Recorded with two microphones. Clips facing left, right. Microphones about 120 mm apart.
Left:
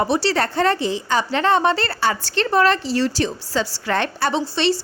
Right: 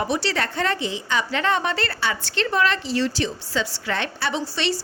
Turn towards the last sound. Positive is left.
turn(degrees=30)  # may be behind; listen again after turning